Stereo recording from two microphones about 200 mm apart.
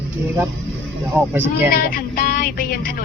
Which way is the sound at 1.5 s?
50° left (ahead or behind).